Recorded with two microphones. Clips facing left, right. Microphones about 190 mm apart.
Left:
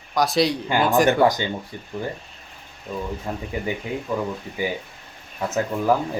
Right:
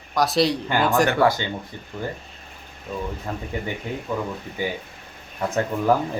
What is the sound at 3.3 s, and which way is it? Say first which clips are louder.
Speech: left 1 dB; 15° left (ahead or behind).